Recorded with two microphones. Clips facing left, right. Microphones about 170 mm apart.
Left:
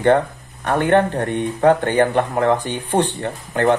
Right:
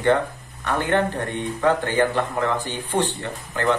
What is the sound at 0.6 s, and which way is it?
Speech, 55° left (ahead or behind).